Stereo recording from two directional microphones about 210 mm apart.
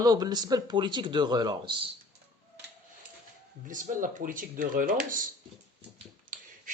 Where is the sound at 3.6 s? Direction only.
40° right (ahead or behind).